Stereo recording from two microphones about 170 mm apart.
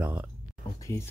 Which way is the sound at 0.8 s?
15° left (ahead or behind).